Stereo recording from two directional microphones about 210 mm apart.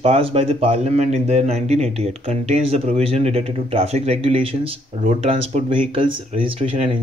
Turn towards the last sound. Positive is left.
turn(degrees=-25)  # may be behind; listen again after turning